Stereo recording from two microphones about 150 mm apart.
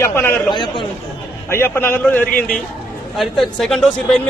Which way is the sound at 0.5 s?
30° left (ahead or behind).